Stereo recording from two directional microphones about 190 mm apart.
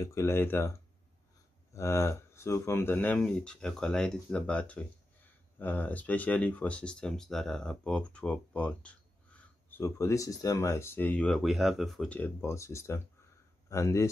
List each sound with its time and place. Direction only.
0.0 s speech: 15° left (ahead or behind)